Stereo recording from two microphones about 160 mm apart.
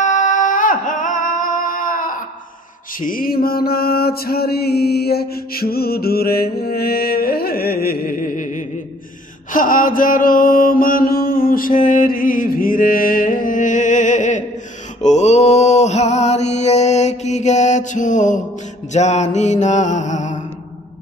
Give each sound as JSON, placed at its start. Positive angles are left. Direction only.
{"t": 0.0, "sound": "music", "side_deg": 55}
{"t": 3.0, "sound": "mantra", "side_deg": 60}